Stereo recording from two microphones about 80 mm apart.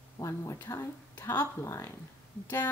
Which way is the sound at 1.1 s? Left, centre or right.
Left.